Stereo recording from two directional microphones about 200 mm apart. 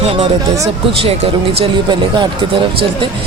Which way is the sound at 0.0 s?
30° right (ahead or behind).